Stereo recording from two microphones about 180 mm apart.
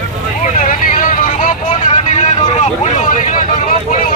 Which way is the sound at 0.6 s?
50° left (ahead or behind).